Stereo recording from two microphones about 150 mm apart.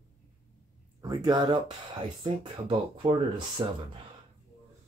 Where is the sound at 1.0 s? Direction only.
25° right (ahead or behind).